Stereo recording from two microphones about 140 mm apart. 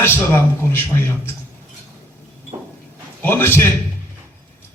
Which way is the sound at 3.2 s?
15° left (ahead or behind).